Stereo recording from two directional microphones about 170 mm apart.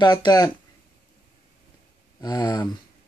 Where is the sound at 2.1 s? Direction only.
20° left (ahead or behind).